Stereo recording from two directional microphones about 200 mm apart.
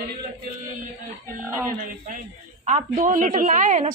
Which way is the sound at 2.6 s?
40° right (ahead or behind).